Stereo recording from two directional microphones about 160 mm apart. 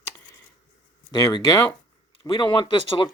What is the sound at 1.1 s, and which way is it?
Speech, 25° left (ahead or behind).